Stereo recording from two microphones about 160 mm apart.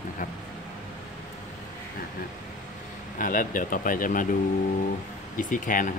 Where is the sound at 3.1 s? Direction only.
55° left (ahead or behind).